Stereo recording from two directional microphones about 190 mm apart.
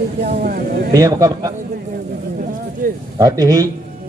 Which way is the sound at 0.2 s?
40° right (ahead or behind).